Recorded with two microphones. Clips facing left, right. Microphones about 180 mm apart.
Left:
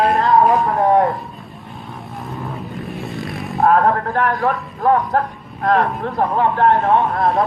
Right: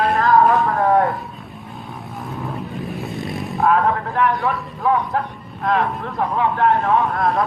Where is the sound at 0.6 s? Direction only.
20° left (ahead or behind).